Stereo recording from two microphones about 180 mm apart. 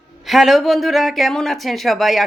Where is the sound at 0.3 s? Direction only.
Centre (ahead or behind).